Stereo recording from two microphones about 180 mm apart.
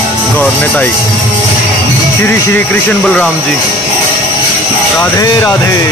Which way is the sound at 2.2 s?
10° left (ahead or behind).